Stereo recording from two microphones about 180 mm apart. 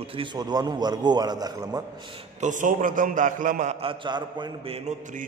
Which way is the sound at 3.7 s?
25° right (ahead or behind).